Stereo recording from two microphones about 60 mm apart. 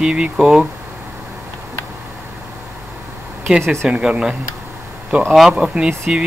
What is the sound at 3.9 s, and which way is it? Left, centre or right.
Speech, centre.